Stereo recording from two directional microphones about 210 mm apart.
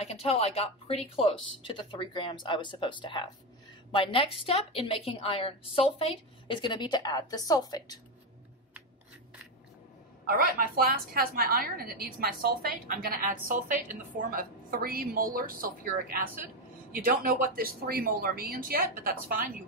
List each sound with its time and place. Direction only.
0.0 s a woman's voice: 30° left (ahead or behind)
10.2 s a woman's voice: 45° right (ahead or behind)